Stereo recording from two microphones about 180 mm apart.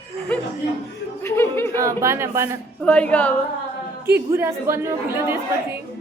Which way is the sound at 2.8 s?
10° left (ahead or behind).